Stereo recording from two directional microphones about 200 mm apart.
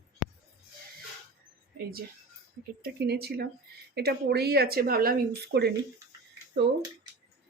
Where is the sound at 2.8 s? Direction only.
55° right (ahead or behind).